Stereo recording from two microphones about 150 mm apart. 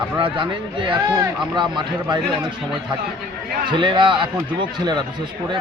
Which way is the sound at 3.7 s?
30° right (ahead or behind).